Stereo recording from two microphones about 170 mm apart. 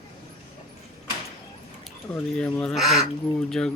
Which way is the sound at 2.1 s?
5° left (ahead or behind).